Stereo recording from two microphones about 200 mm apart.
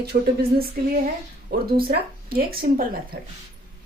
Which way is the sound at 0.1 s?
55° right (ahead or behind).